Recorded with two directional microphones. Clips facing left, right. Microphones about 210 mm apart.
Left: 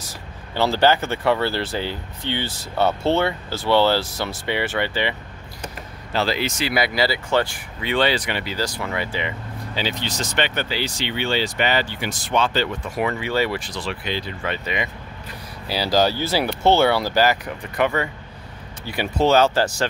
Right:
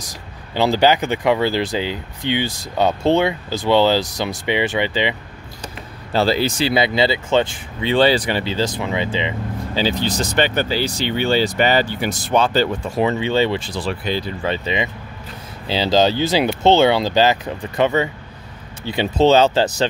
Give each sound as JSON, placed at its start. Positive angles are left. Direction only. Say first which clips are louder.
{"t": 0.0, "sound": "speech", "louder": "right 1 dB", "side_deg": -15}
{"t": 6.1, "sound": "speech", "louder": "right 5 dB", "side_deg": -35}
{"t": 9.8, "sound": "speech", "louder": "right 6 dB", "side_deg": -35}